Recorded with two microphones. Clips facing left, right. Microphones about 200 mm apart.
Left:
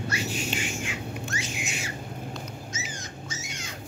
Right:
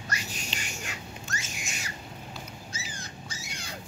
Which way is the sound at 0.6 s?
40° right (ahead or behind).